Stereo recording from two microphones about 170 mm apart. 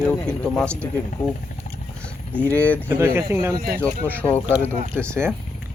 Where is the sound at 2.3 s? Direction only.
10° left (ahead or behind).